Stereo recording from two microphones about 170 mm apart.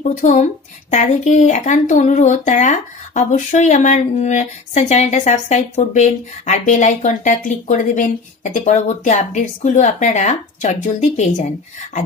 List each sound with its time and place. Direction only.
0.0 s speech: 45° left (ahead or behind)